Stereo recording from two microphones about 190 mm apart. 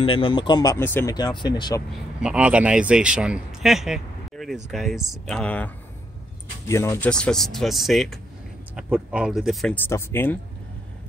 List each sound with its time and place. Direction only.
0.0 s speech: 30° left (ahead or behind); by 1.1 s 10° left (ahead or behind)
1.1 s speech: 20° left (ahead or behind)
2.2 s speech: 5° right (ahead or behind)
6.7 s speech: 15° left (ahead or behind)
9.8 s speech: 15° left (ahead or behind)